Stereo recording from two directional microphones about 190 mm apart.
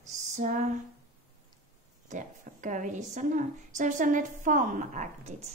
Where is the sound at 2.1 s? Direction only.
40° right (ahead or behind).